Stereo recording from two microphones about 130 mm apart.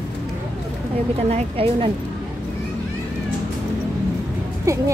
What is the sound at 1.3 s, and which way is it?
Speech, 50° right (ahead or behind).